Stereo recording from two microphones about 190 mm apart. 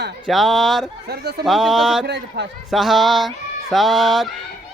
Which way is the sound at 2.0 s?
65° right (ahead or behind).